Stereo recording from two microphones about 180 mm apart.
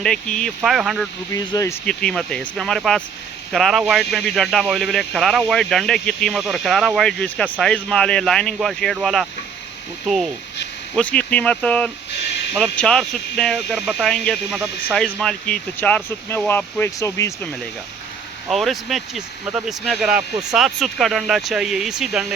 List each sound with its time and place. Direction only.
0.0 s speech: 5° left (ahead or behind)
1.3 s speech: 20° left (ahead or behind)
1.9 s speech: 5° left (ahead or behind)
10.9 s speech: 5° left (ahead or behind)
15.0 s speech: 5° left (ahead or behind)
18.4 s speech: centre (ahead or behind)